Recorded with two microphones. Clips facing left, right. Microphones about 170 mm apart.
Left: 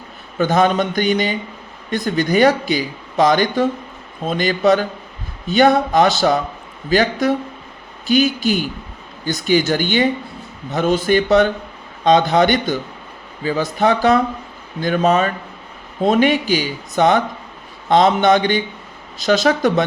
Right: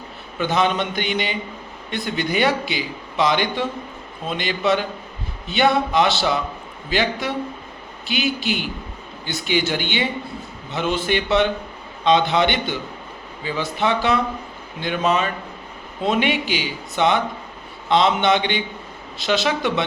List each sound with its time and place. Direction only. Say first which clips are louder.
0.3 s speech: left 5 dB; 45° left (ahead or behind)